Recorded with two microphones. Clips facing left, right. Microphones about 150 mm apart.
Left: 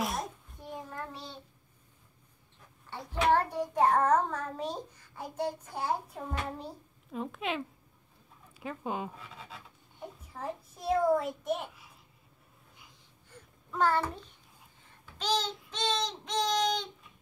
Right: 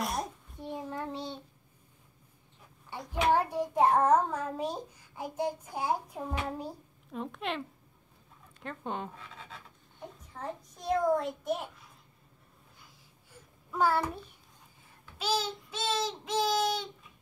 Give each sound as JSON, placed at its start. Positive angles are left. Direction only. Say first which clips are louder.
{"t": 0.0, "sound": "child singing", "louder": "even", "side_deg": 0}
{"t": 0.8, "sound": "child singing", "louder": "right 5 dB", "side_deg": -20}
{"t": 3.1, "sound": "a child's voice", "louder": "even", "side_deg": -10}
{"t": 7.1, "sound": "a child's voice", "louder": "left 1 dB", "side_deg": 0}
{"t": 13.3, "sound": "a sound", "louder": "right 1 dB", "side_deg": -10}
{"t": 14.9, "sound": "child singing", "louder": "even", "side_deg": -5}